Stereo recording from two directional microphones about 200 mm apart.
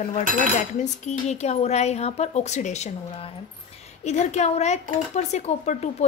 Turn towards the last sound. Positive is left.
turn(degrees=35)  # may be behind; listen again after turning